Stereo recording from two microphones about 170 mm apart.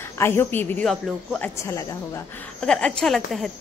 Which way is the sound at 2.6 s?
5° left (ahead or behind).